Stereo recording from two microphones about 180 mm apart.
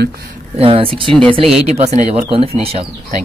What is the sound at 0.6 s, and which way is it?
Speech, 30° right (ahead or behind).